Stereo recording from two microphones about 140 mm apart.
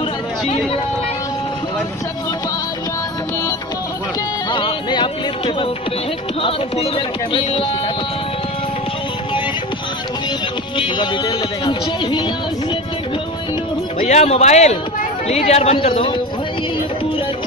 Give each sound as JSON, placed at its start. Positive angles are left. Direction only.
{"t": 4.5, "sound": "music", "side_deg": 35}
{"t": 10.8, "sound": "music", "side_deg": 35}
{"t": 13.9, "sound": "a woman's voice", "side_deg": 55}
{"t": 15.9, "sound": "music", "side_deg": 35}